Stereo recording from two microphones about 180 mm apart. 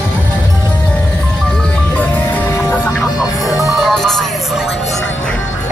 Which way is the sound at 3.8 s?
Centre (ahead or behind).